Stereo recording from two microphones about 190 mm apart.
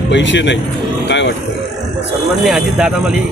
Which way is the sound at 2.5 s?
5° right (ahead or behind).